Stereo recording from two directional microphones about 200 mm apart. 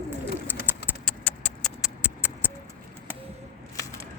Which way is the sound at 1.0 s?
5° left (ahead or behind).